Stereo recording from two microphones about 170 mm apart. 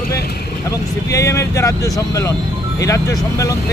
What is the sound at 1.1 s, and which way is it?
Speech, 20° left (ahead or behind).